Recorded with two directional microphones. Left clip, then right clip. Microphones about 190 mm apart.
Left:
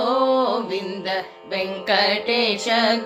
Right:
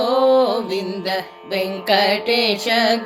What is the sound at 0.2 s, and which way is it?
Music, 25° right (ahead or behind).